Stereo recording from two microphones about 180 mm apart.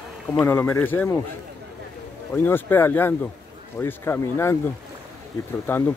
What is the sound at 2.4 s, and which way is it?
Speech, 10° left (ahead or behind).